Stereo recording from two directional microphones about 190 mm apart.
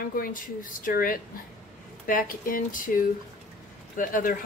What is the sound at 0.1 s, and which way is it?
Speech, 45° left (ahead or behind).